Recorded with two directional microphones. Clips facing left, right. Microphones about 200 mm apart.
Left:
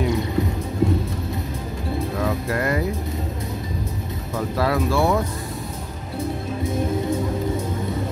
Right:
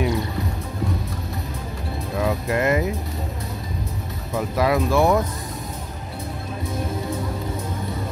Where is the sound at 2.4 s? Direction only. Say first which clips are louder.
Right 2 dB; 20° right (ahead or behind).